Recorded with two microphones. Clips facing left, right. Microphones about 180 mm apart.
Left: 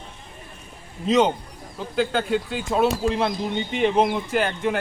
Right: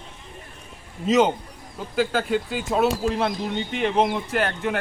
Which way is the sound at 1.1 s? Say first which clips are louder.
Even; centre (ahead or behind).